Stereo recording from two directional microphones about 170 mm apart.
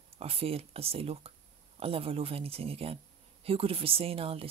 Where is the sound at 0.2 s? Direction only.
35° right (ahead or behind).